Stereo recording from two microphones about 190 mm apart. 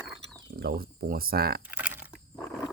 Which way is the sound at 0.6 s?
50° right (ahead or behind).